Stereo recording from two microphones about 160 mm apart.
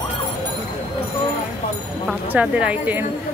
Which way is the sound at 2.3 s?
10° right (ahead or behind).